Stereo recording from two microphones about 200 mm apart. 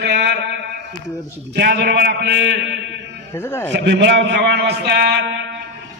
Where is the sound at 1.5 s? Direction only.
55° right (ahead or behind).